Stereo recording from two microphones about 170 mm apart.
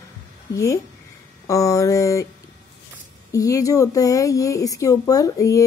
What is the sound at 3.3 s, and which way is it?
Speech, 20° left (ahead or behind).